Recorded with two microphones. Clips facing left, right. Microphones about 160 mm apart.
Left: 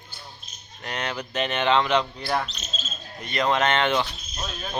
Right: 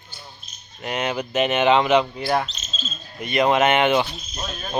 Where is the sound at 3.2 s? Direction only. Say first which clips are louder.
Right 5 dB; 10° right (ahead or behind).